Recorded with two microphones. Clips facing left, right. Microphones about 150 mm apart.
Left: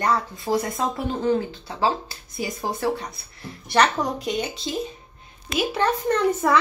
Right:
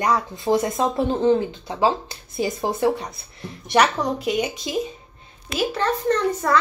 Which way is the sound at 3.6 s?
10° right (ahead or behind).